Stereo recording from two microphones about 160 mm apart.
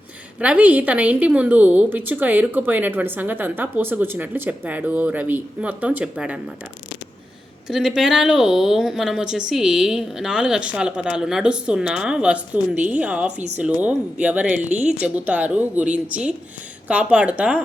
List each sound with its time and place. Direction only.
0.3 s a woman's voice: 10° right (ahead or behind)
7.7 s a woman's voice: 5° right (ahead or behind)
14.7 s speech: 45° right (ahead or behind)
15.0 s a woman's voice: 10° right (ahead or behind)